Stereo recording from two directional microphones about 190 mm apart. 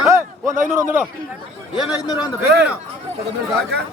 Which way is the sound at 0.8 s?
10° right (ahead or behind).